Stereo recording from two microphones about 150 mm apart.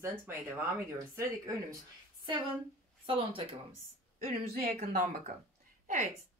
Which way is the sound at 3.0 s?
35° right (ahead or behind).